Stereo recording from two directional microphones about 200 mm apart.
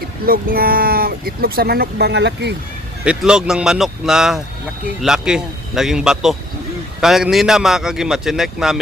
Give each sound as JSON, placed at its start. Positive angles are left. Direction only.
{"t": 0.3, "sound": "speech", "side_deg": -45}
{"t": 3.0, "sound": "speech", "side_deg": -5}